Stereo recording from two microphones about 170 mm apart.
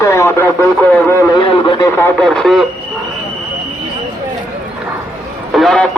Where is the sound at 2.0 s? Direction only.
5° left (ahead or behind).